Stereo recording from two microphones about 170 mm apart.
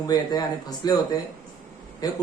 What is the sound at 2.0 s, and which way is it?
Speech, 20° left (ahead or behind).